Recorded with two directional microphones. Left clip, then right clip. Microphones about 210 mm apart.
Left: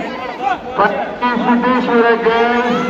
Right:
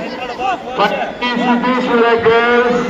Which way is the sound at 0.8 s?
25° left (ahead or behind).